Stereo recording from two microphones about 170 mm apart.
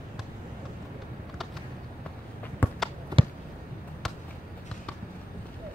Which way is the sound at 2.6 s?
10° left (ahead or behind).